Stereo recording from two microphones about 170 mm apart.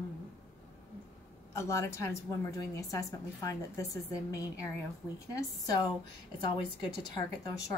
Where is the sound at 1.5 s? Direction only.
15° left (ahead or behind).